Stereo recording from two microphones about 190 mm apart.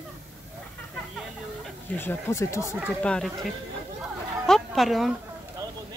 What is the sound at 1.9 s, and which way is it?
Speech, 15° left (ahead or behind).